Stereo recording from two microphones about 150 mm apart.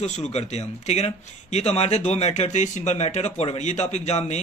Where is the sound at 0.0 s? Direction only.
45° left (ahead or behind).